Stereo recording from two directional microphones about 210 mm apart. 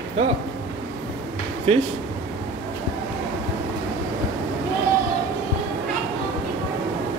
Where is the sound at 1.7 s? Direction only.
30° right (ahead or behind).